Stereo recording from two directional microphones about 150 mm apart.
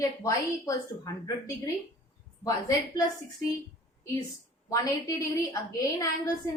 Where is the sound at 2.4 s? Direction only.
25° left (ahead or behind).